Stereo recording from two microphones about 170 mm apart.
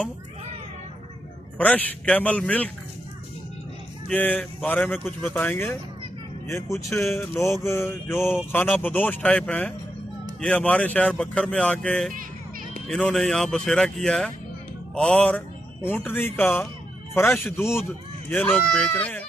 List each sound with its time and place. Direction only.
1.6 s mantra: 10° left (ahead or behind)
4.1 s mantra: 10° left (ahead or behind)
12.8 s speech: 5° left (ahead or behind)
15.0 s mantra: 5° left (ahead or behind)